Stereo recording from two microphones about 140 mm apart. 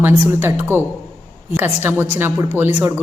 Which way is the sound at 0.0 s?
15° right (ahead or behind).